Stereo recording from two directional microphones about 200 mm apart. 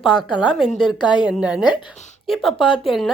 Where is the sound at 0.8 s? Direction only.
25° left (ahead or behind).